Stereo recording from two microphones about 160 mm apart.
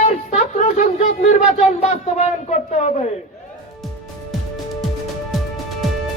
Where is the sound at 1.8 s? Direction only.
45° left (ahead or behind).